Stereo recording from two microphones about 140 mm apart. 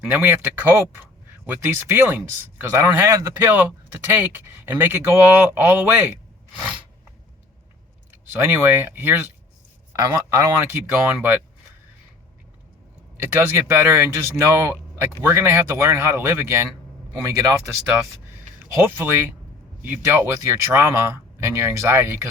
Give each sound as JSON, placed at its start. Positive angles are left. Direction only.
{"t": 0.0, "sound": "speech", "side_deg": -10}
{"t": 8.3, "sound": "speech", "side_deg": -15}
{"t": 13.2, "sound": "speech", "side_deg": -15}
{"t": 18.7, "sound": "speech", "side_deg": -15}